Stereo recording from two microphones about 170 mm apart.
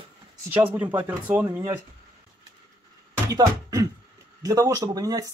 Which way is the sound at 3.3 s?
20° right (ahead or behind).